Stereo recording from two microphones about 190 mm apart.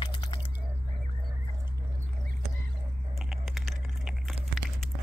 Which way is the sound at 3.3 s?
Centre (ahead or behind).